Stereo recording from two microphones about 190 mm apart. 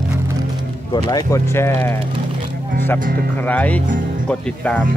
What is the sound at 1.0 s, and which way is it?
Speech, 20° left (ahead or behind).